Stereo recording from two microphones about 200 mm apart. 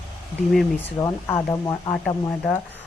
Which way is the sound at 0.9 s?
15° left (ahead or behind).